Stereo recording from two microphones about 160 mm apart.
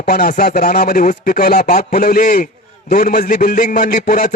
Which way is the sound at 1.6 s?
50° left (ahead or behind).